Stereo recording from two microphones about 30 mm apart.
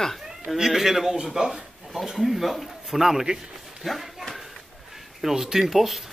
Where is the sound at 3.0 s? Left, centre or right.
Centre.